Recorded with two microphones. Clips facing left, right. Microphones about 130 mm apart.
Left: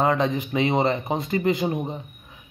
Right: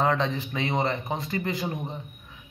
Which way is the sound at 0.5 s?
25° left (ahead or behind).